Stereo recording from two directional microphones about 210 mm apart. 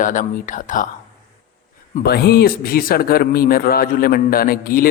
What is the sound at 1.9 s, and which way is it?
Speech, 50° left (ahead or behind).